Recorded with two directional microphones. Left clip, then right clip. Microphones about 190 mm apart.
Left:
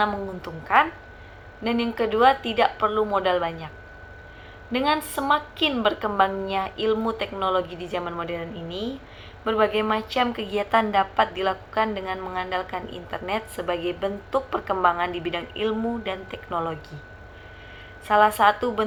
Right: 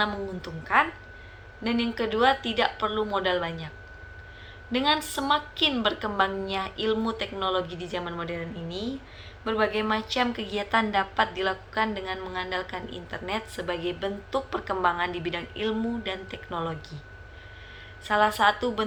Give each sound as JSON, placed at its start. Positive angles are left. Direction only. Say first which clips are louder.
{"t": 0.0, "sound": "a woman's voice", "louder": "left 4 dB", "side_deg": -15}
{"t": 4.7, "sound": "a woman's voice", "louder": "left 2 dB", "side_deg": -15}
{"t": 18.1, "sound": "a woman's voice", "louder": "left 4 dB", "side_deg": -15}